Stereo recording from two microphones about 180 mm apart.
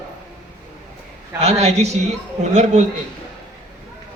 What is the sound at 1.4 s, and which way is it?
Speech, 35° right (ahead or behind).